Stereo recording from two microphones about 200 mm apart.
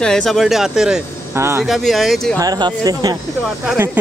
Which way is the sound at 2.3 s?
20° right (ahead or behind).